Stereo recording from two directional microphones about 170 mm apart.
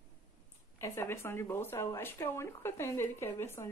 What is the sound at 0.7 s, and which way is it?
Speech, 15° left (ahead or behind).